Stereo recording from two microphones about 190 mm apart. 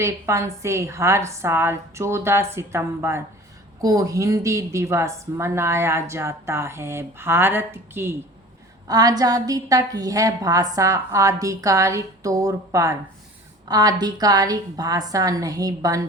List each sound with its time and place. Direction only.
0.0 s a woman's voice: 15° right (ahead or behind)